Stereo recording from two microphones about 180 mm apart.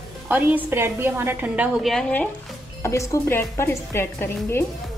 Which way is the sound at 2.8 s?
15° left (ahead or behind).